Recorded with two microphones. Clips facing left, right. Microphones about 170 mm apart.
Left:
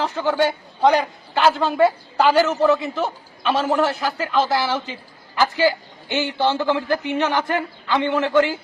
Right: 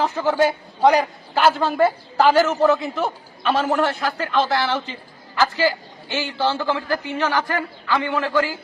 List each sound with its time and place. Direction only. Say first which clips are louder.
0.0 s a man's voice: right 1 dB; 5° right (ahead or behind)
6.1 s a man's voice: left 2 dB; 20° left (ahead or behind)